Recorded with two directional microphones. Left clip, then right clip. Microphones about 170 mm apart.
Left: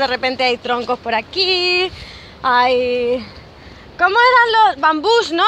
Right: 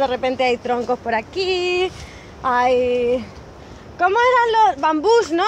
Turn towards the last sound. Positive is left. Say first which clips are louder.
# left 1 dB
turn(degrees=5)  # may be behind; listen again after turning